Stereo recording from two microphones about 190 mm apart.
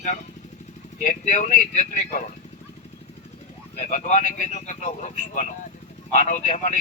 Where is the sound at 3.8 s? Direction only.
40° left (ahead or behind).